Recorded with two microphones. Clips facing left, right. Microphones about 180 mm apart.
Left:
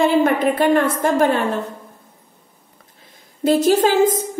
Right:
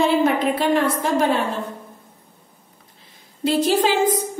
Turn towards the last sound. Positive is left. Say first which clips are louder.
# left 4 dB
turn(degrees=45)  # may be behind; listen again after turning